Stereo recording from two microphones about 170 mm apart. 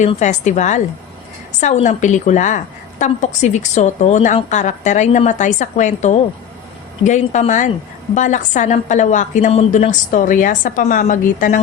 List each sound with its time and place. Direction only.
0.2 s a woman's voice: 45° left (ahead or behind)